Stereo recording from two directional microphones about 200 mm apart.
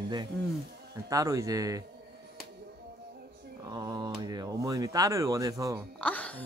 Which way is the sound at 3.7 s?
20° right (ahead or behind).